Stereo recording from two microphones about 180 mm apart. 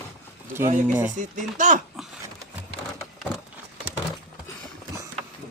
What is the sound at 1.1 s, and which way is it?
Chopping, 45° right (ahead or behind).